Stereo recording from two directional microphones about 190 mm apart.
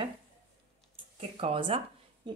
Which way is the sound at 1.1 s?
30° right (ahead or behind).